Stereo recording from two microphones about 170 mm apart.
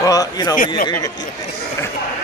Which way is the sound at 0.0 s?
20° left (ahead or behind).